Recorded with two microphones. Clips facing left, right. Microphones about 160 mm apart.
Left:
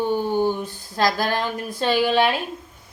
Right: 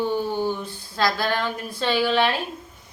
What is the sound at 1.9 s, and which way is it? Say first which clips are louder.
Speech: left 2 dB; 15° left (ahead or behind).